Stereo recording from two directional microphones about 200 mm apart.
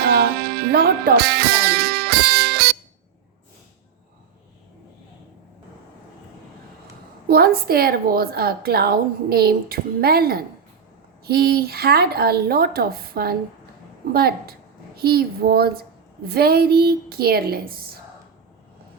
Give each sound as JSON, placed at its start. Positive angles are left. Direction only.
{"t": 0.0, "sound": "music", "side_deg": -50}
{"t": 7.3, "sound": "a woman's voice", "side_deg": -50}